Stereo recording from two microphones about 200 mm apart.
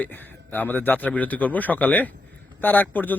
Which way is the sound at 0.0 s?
10° left (ahead or behind).